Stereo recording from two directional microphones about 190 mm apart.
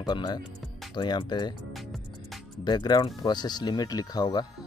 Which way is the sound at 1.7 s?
Centre (ahead or behind).